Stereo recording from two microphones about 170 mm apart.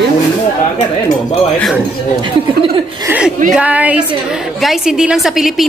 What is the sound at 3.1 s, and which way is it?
A woman's voice, 5° right (ahead or behind).